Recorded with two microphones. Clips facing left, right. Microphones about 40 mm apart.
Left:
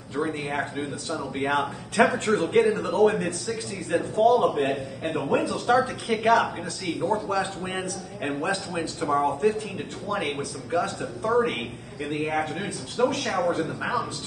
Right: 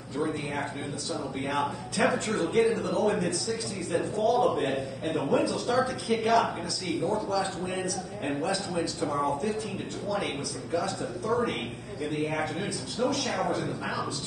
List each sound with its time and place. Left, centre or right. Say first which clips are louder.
0.1 s a man's voice: left 3 dB; left